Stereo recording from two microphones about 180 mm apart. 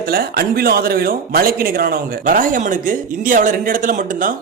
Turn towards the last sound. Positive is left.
turn(degrees=-50)  # may be behind; listen again after turning